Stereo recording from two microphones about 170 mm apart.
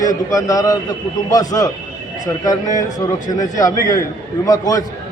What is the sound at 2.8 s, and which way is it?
A man's voice, 20° left (ahead or behind).